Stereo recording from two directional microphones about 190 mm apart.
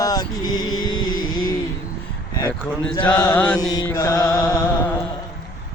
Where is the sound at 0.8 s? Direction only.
90° left.